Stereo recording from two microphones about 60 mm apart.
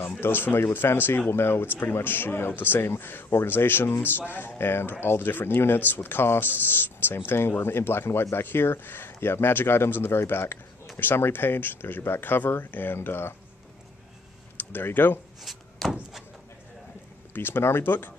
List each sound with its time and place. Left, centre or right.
0.2 s speech: left
14.6 s speech: left
15.4 s a sound: centre
17.3 s speech: left